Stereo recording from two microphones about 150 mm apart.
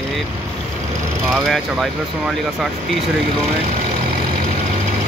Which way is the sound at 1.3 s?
Centre (ahead or behind).